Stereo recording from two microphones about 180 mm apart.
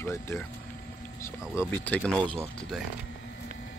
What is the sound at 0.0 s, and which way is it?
Speech, 15° left (ahead or behind).